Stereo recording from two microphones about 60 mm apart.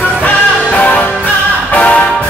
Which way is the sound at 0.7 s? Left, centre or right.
Left.